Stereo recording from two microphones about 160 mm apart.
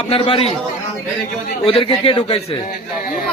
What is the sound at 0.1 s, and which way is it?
Speech, 35° left (ahead or behind).